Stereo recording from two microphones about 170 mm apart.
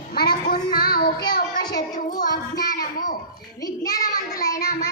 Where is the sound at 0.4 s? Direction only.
55° left (ahead or behind).